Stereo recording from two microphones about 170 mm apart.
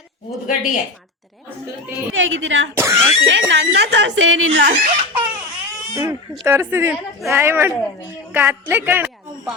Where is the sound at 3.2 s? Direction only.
90° right.